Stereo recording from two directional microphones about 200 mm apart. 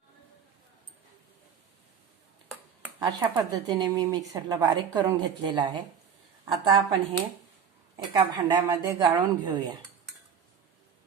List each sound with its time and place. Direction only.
3.0 s speech: 20° right (ahead or behind)